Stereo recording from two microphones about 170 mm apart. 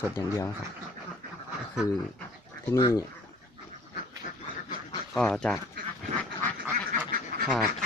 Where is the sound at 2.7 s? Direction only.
20° left (ahead or behind).